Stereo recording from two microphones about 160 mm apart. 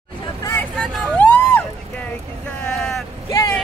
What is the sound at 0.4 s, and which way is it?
Vehicle, 15° left (ahead or behind).